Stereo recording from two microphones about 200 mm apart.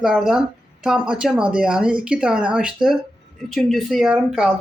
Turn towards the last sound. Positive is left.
turn(degrees=0)  # may be behind; listen again after turning